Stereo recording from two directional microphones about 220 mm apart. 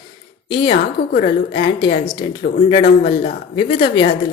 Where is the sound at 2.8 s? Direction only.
40° left (ahead or behind).